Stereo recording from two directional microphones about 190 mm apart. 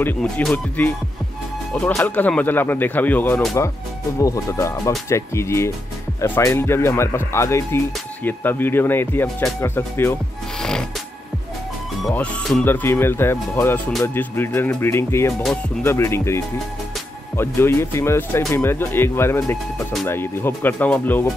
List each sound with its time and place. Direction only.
0.0 s speech: 5° left (ahead or behind)
10.6 s music: 5° left (ahead or behind)
12.1 s speech: 5° left (ahead or behind)